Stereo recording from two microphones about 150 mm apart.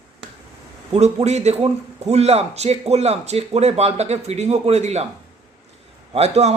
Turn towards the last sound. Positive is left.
turn(degrees=-45)  # may be behind; listen again after turning